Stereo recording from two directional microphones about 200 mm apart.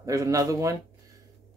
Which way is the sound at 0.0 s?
15° right (ahead or behind).